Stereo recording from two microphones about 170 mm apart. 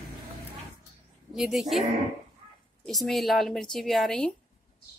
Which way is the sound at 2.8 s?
Centre (ahead or behind).